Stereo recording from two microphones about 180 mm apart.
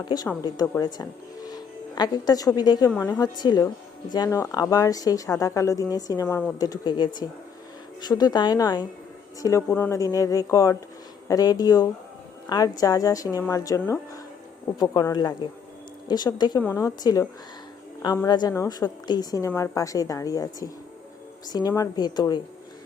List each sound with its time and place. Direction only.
0.4 s a woman's voice: 20° left (ahead or behind)
2.9 s speech: 10° left (ahead or behind)
3.2 s a woman's voice: 25° left (ahead or behind)